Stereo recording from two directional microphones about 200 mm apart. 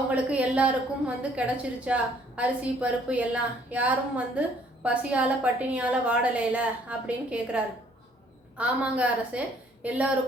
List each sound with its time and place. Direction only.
0.1 s a woman's voice: 5° right (ahead or behind)